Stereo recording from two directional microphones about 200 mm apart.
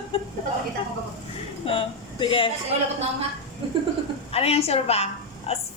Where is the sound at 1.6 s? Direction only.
25° left (ahead or behind).